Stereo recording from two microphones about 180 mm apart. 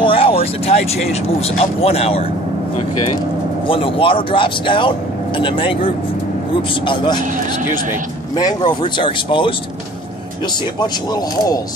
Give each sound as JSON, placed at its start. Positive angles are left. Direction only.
{"t": 0.0, "sound": "vehicle", "side_deg": 30}
{"t": 1.1, "sound": "speech", "side_deg": 35}
{"t": 3.6, "sound": "speech", "side_deg": 30}
{"t": 8.4, "sound": "speech", "side_deg": 20}